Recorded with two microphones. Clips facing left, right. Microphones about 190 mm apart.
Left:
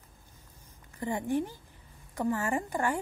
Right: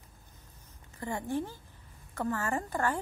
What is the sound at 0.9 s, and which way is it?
Speech, 15° left (ahead or behind).